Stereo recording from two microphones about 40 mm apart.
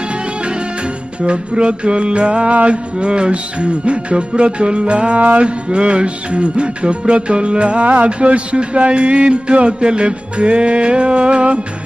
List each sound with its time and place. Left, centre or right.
1.2 s music: right